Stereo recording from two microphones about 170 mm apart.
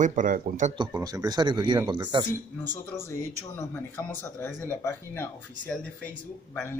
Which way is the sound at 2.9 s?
15° left (ahead or behind).